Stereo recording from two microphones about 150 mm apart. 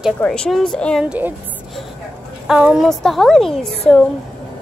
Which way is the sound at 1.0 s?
10° right (ahead or behind).